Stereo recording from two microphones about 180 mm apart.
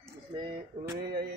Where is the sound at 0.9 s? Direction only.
65° right (ahead or behind).